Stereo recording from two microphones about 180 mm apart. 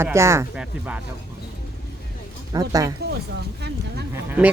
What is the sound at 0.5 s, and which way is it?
Speech, 5° right (ahead or behind).